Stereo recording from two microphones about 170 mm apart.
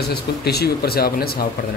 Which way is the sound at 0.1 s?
70° left (ahead or behind).